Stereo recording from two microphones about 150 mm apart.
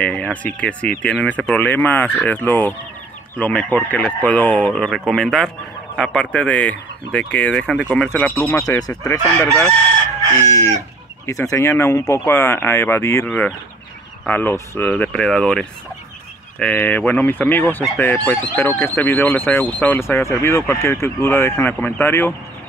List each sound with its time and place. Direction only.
0.0 s speech: 10° left (ahead or behind); by 9.2 s 25° left (ahead or behind)
9.2 s speech: 10° left (ahead or behind)
10.4 s speech: 20° left (ahead or behind)